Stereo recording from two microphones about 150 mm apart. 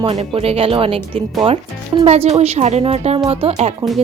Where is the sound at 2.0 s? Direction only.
45° right (ahead or behind).